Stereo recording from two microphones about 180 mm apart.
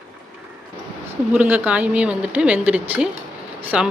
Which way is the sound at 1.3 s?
10° right (ahead or behind).